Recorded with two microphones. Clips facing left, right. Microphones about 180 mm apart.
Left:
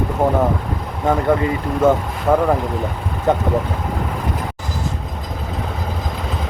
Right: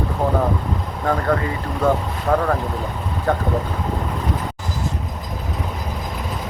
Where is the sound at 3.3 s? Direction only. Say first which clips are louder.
Left 4 dB; 20° left (ahead or behind).